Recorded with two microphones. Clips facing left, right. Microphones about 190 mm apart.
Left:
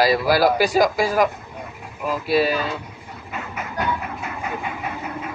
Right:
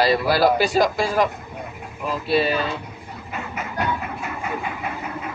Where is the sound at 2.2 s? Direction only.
10° left (ahead or behind).